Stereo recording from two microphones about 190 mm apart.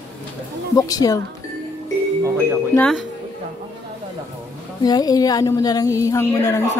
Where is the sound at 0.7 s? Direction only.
20° left (ahead or behind).